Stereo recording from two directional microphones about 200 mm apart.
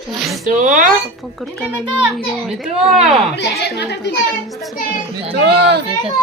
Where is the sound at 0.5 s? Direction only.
40° right (ahead or behind).